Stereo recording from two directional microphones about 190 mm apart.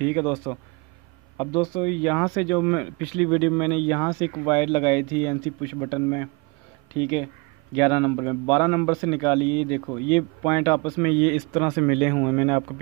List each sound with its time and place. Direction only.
0.0 s speech: 10° left (ahead or behind)
1.4 s speech: 25° left (ahead or behind)
2.6 s speech: 5° left (ahead or behind)
3.7 s speech: 15° left (ahead or behind)
11.0 s speech: 5° left (ahead or behind)